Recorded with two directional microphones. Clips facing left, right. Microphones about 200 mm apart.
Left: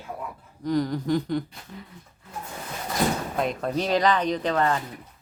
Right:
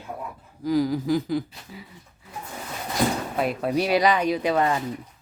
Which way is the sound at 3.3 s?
5° right (ahead or behind).